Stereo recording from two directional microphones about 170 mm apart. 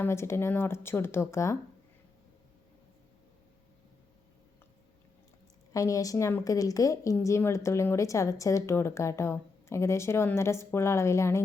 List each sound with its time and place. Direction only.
0.0 s a woman's voice: 15° left (ahead or behind)
5.7 s a woman's voice: 20° left (ahead or behind)